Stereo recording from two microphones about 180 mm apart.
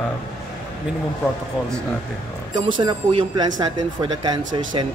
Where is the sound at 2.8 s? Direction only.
25° right (ahead or behind).